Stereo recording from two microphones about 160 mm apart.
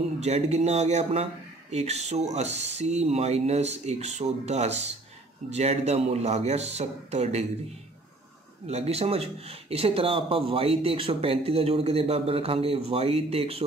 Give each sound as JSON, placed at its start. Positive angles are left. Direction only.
{"t": 0.2, "sound": "speech", "side_deg": -45}
{"t": 8.6, "sound": "speech", "side_deg": -40}